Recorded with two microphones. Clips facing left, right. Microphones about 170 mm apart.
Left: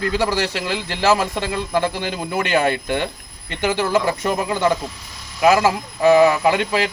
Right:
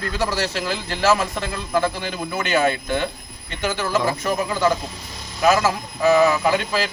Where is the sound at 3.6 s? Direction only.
30° left (ahead or behind).